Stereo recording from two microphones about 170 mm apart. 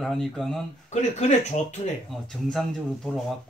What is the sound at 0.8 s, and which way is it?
Speech, 40° left (ahead or behind).